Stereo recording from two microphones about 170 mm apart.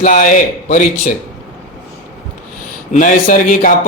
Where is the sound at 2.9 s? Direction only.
50° left (ahead or behind).